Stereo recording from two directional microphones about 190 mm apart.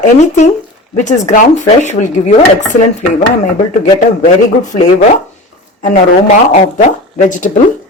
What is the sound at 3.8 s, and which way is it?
Speech, 40° left (ahead or behind).